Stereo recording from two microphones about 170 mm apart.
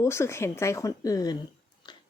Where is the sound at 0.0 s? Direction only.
15° left (ahead or behind).